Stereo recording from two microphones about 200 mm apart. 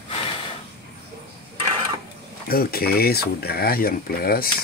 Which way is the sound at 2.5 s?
50° left (ahead or behind).